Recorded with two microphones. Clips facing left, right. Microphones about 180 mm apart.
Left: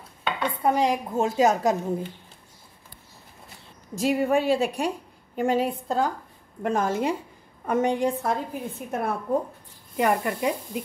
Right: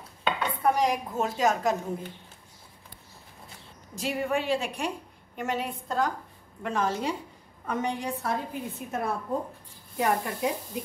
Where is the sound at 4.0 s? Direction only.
40° left (ahead or behind).